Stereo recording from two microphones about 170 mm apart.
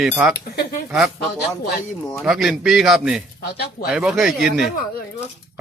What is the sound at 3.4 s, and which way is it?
Speech, 60° left (ahead or behind).